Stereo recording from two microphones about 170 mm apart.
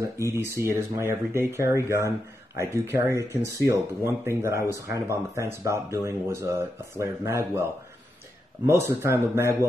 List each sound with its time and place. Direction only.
0.6 s speech: 15° right (ahead or behind)
8.6 s speech: 15° right (ahead or behind)